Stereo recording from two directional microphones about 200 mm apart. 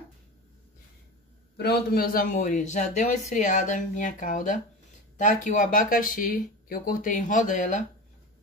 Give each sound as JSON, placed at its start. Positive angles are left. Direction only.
{"t": 1.6, "sound": "a man's voice", "side_deg": 50}